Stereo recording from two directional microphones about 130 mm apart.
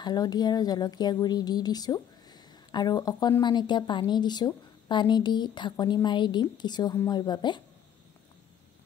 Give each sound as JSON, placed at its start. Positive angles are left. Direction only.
{"t": 0.0, "sound": "a woman's voice", "side_deg": 30}